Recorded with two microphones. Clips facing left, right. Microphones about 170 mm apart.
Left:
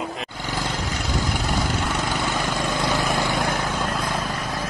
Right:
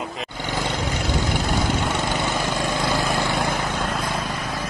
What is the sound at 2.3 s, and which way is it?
Vehicle, 15° right (ahead or behind).